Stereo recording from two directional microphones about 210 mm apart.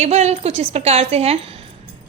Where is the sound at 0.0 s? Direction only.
30° right (ahead or behind).